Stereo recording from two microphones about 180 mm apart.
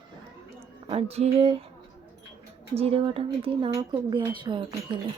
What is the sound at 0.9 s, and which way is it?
Speech, 35° right (ahead or behind).